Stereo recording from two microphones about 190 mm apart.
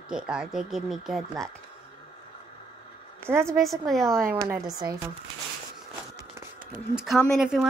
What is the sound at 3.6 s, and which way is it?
Speech, centre (ahead or behind).